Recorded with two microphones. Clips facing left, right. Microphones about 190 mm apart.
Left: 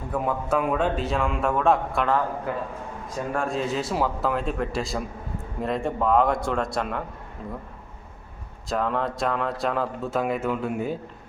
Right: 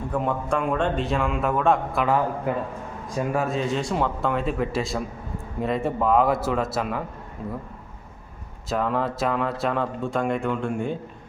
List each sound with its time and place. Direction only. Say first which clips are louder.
0.1 s speech: left 1 dB; 5° left (ahead or behind)
2.5 s a man's voice: right 4 dB; 20° right (ahead or behind)
3.3 s speech: even; centre (ahead or behind)
8.7 s speech: right 1 dB; centre (ahead or behind)